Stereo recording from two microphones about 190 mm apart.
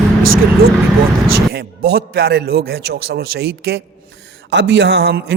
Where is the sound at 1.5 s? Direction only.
55° right (ahead or behind).